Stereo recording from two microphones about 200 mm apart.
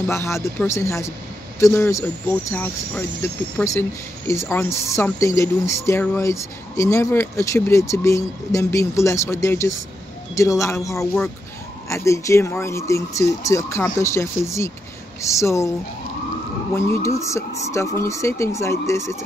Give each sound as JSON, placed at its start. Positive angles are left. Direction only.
{"t": 0.0, "sound": "speech", "side_deg": 10}
{"t": 16.7, "sound": "speech", "side_deg": 15}